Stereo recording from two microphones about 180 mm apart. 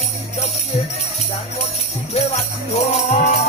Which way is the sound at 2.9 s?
40° left (ahead or behind).